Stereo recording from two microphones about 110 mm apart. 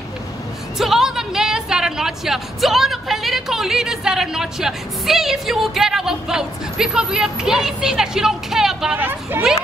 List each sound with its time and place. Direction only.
0.7 s a woman's voice: 5° right (ahead or behind)
8.9 s speech: 15° right (ahead or behind)